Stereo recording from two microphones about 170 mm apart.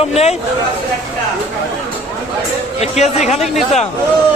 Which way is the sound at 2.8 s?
40° left (ahead or behind).